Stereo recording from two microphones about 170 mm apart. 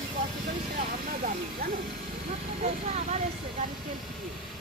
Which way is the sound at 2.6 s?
40° right (ahead or behind).